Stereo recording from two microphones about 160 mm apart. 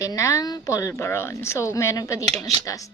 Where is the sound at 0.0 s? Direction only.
20° left (ahead or behind).